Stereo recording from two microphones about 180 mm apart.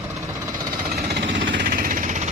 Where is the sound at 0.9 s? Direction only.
65° right (ahead or behind).